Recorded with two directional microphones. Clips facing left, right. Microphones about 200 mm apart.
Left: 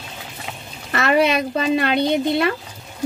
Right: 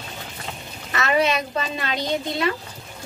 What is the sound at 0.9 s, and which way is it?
Speech, 55° left (ahead or behind).